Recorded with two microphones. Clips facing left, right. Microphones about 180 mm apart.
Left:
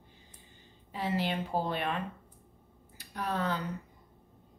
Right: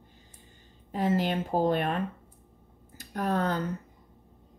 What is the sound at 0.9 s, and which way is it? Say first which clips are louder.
A woman's voice: right 5 dB; 45° right (ahead or behind).